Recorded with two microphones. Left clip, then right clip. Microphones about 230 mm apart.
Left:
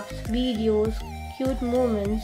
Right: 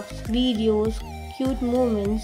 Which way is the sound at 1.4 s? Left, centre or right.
Centre.